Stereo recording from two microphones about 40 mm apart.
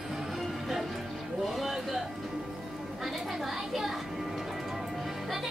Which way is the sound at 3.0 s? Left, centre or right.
Centre.